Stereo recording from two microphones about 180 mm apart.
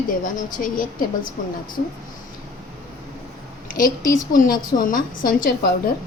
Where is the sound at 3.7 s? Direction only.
50° left (ahead or behind).